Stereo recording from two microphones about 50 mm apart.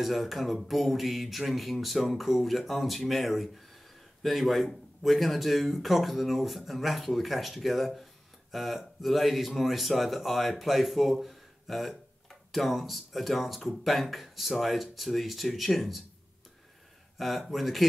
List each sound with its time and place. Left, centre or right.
0.0 s speech: centre
17.2 s speech: centre